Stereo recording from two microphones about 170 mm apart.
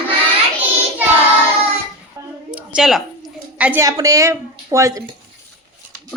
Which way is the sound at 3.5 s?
10° right (ahead or behind).